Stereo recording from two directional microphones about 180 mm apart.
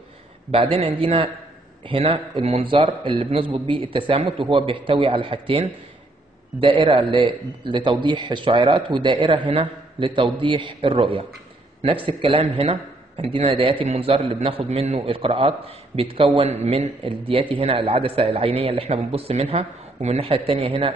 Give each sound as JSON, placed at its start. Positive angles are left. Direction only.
{"t": 0.5, "sound": "a man's voice", "side_deg": -30}
{"t": 6.8, "sound": "a man's voice", "side_deg": -25}